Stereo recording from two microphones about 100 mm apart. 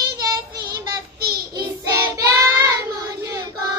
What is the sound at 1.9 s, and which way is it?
Child singing, 30° right (ahead or behind).